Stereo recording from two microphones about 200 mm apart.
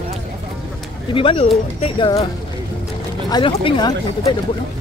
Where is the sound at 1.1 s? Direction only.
25° left (ahead or behind).